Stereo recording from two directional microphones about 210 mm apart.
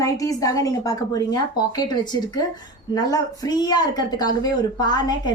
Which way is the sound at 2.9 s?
15° left (ahead or behind).